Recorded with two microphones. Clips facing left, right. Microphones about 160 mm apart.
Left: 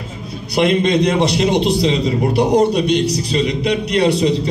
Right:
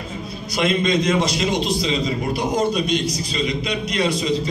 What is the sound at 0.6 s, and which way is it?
A man's voice, 65° left (ahead or behind).